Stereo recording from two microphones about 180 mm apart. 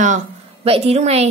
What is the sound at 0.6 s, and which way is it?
Speech, 35° right (ahead or behind).